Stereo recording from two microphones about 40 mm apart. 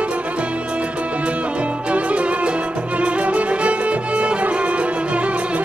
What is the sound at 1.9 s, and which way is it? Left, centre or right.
Music, right.